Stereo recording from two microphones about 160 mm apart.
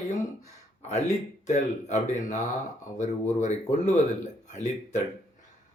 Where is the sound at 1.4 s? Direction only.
45° left (ahead or behind).